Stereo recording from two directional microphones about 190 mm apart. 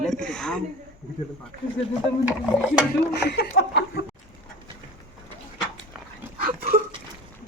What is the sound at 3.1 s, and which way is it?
Speech, 60° left (ahead or behind).